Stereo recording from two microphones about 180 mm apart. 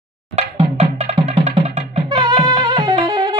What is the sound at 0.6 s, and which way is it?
Music, 35° right (ahead or behind).